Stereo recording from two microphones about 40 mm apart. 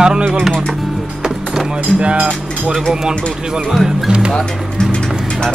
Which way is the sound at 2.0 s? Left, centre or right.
Right.